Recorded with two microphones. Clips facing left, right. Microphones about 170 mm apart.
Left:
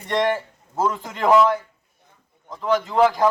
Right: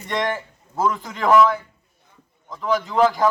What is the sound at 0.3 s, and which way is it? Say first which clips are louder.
Speech: left 3 dB; 25° left (ahead or behind).